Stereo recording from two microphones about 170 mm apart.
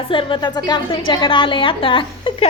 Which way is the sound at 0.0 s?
30° left (ahead or behind).